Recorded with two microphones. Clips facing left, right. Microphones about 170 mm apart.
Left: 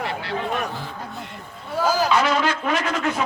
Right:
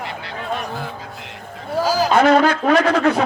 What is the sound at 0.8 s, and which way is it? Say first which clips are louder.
Music: right 2 dB; 90° right.